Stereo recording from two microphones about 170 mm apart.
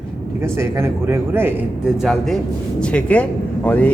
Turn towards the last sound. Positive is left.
turn(degrees=10)  # may be behind; listen again after turning